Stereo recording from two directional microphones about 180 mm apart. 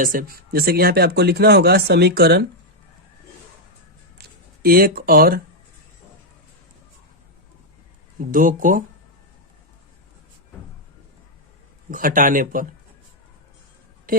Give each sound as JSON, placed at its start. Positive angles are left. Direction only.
{"t": 0.0, "sound": "speech", "side_deg": -50}
{"t": 4.2, "sound": "speech", "side_deg": -55}
{"t": 8.2, "sound": "speech", "side_deg": -50}
{"t": 11.9, "sound": "speech", "side_deg": -50}